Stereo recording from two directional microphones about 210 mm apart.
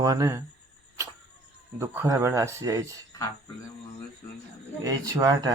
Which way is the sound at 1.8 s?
10° right (ahead or behind).